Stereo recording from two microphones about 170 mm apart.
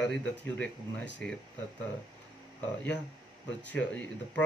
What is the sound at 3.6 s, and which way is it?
Speech, 10° left (ahead or behind).